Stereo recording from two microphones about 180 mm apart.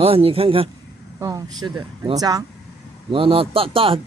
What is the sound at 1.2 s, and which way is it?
A man's voice, 20° right (ahead or behind).